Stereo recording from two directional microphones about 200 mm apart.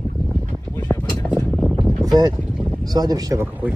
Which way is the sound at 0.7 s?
10° left (ahead or behind).